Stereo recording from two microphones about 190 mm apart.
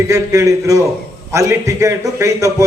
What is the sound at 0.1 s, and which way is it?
A man's voice, 15° right (ahead or behind).